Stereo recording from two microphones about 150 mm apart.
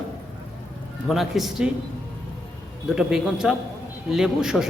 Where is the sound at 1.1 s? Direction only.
Centre (ahead or behind).